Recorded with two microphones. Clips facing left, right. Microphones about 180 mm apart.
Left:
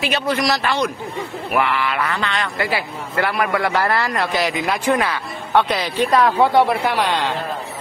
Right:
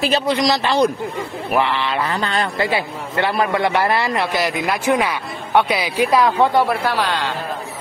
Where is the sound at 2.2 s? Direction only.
35° right (ahead or behind).